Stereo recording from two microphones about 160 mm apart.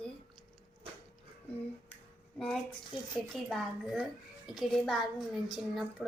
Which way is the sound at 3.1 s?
Centre (ahead or behind).